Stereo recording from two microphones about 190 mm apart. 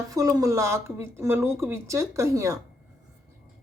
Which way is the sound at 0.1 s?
20° right (ahead or behind).